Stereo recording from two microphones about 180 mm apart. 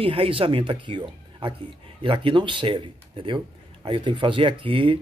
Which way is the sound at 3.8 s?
30° right (ahead or behind).